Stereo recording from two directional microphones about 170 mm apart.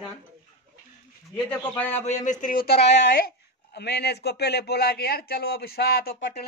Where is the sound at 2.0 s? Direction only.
45° left (ahead or behind).